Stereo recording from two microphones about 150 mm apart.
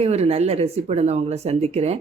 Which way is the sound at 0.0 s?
45° right (ahead or behind).